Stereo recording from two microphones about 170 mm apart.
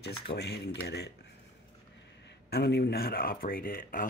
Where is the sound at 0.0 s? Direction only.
70° left (ahead or behind).